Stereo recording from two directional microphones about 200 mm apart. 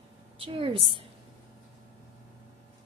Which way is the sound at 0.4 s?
25° right (ahead or behind).